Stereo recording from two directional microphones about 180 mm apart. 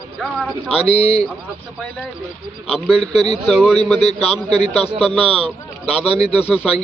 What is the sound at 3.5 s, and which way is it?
Speech, centre (ahead or behind).